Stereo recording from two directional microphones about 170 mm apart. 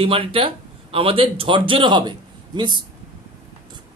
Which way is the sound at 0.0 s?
30° right (ahead or behind).